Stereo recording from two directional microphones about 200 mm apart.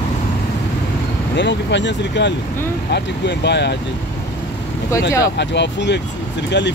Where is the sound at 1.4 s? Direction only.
60° left (ahead or behind).